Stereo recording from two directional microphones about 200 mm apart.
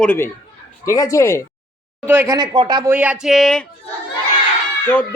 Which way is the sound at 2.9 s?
5° right (ahead or behind).